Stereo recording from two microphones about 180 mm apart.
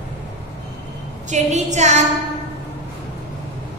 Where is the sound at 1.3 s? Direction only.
40° right (ahead or behind).